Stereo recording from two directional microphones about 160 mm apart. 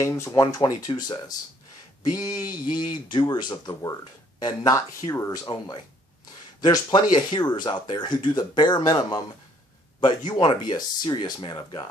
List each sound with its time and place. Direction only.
0.0 s speech: 20° left (ahead or behind)